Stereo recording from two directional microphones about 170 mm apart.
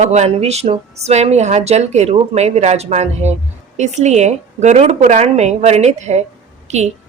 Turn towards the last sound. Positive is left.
turn(degrees=-40)  # may be behind; listen again after turning